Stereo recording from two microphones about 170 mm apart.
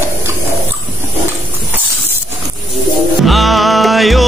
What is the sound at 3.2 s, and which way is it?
Music, centre (ahead or behind).